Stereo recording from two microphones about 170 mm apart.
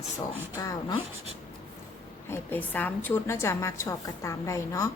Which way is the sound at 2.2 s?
10° left (ahead or behind).